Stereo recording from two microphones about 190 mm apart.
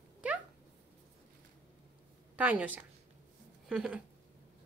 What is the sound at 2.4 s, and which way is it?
Speech, 10° right (ahead or behind).